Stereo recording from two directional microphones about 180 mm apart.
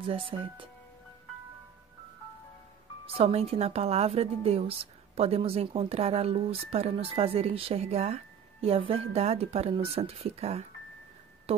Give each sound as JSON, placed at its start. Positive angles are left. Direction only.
{"t": 0.0, "sound": "speech", "side_deg": -30}
{"t": 3.1, "sound": "speech", "side_deg": -30}